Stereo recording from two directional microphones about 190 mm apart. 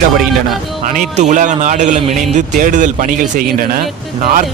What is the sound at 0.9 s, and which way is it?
A man's voice, 40° right (ahead or behind).